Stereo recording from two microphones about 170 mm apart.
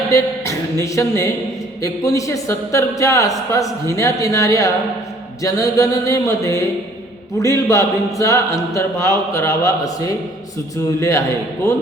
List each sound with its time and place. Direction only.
0.1 s speech: 20° left (ahead or behind)
11.6 s speech: 20° left (ahead or behind)